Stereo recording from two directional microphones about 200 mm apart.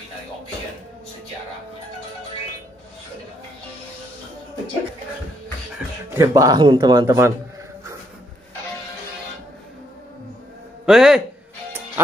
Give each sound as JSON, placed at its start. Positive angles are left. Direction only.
{"t": 6.0, "sound": "speech", "side_deg": -15}
{"t": 10.9, "sound": "a man's voice", "side_deg": 0}